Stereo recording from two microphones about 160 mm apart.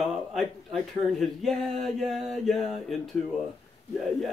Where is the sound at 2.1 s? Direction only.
Centre (ahead or behind).